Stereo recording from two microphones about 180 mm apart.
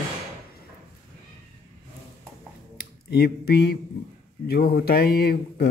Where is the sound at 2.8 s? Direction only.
60° left (ahead or behind).